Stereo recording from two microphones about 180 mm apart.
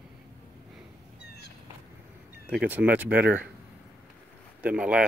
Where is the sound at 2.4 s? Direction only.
10° right (ahead or behind).